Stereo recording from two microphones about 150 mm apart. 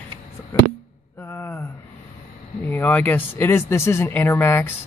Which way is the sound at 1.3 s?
15° left (ahead or behind).